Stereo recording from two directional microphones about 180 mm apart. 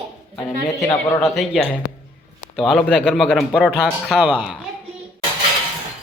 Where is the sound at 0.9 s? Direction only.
15° left (ahead or behind).